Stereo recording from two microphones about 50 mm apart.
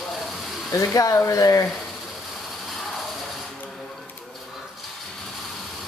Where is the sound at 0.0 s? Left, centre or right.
Centre.